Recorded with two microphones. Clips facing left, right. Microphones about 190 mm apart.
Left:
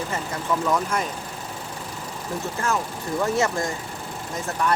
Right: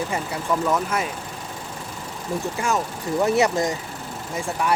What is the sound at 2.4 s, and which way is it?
Speech, 15° right (ahead or behind).